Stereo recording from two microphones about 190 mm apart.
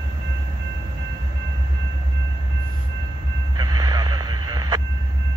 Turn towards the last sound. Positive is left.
turn(degrees=-20)  # may be behind; listen again after turning